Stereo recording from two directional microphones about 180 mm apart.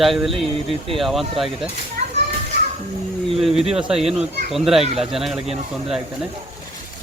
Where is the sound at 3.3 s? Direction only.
Centre (ahead or behind).